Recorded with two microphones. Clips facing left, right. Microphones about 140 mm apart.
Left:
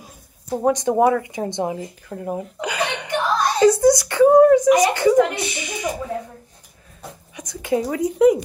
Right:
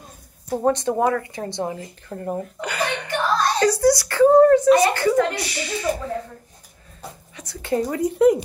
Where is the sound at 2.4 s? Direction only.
15° left (ahead or behind).